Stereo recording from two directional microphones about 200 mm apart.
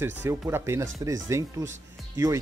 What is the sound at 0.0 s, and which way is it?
Speech, 10° right (ahead or behind).